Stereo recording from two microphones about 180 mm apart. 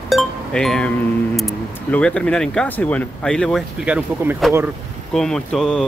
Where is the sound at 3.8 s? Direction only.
10° right (ahead or behind).